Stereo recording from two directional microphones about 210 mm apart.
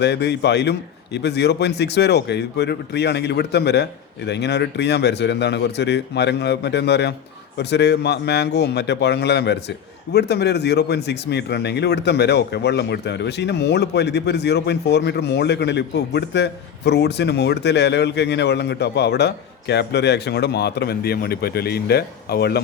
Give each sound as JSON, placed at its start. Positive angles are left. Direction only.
{"t": 0.0, "sound": "speech", "side_deg": 55}